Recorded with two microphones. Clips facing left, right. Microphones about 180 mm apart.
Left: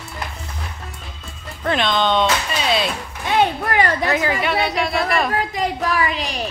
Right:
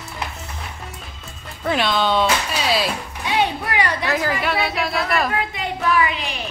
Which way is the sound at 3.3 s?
50° left (ahead or behind).